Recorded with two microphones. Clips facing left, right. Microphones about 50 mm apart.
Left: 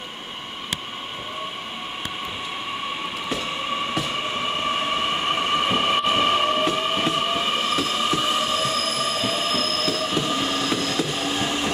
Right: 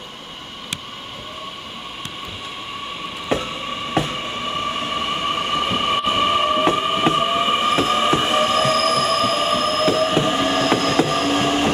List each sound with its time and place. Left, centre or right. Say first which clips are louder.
3.3 s a sound: right 8 dB; right
4.0 s train: right 5 dB; right
4.9 s train: right 1 dB; centre; by 9.5 s right
9.5 s train: right 6 dB; right